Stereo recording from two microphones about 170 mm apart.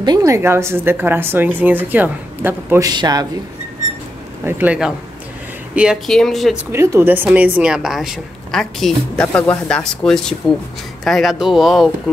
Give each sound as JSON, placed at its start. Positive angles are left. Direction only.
{"t": 0.0, "sound": "a woman's voice", "side_deg": -20}
{"t": 2.9, "sound": "a man's voice", "side_deg": -25}
{"t": 4.5, "sound": "a woman's voice", "side_deg": -10}
{"t": 6.7, "sound": "a woman's voice", "side_deg": -15}